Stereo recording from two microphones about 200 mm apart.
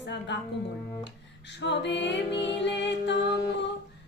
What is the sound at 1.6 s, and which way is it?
Music, 60° left (ahead or behind).